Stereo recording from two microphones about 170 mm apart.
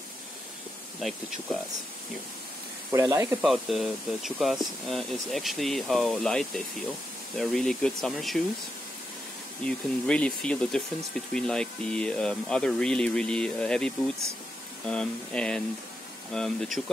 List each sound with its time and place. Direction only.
2.9 s speech: 15° right (ahead or behind)
3.3 s speech: 5° right (ahead or behind)
9.7 s speech: 5° left (ahead or behind)